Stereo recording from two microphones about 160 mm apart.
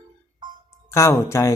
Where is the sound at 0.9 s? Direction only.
20° left (ahead or behind).